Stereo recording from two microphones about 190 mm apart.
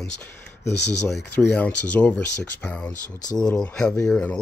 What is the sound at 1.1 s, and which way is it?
Speech, 10° left (ahead or behind).